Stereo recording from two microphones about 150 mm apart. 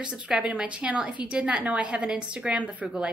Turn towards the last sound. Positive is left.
turn(degrees=-10)  # may be behind; listen again after turning